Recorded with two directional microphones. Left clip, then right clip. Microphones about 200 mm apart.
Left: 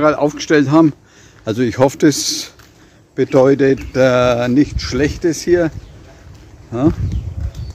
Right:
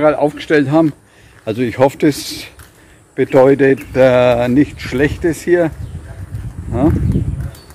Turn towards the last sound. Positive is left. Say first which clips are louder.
# right 1 dB
turn(degrees=10)  # may be behind; listen again after turning